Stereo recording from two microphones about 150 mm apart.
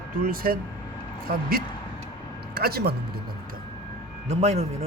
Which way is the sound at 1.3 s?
90° right.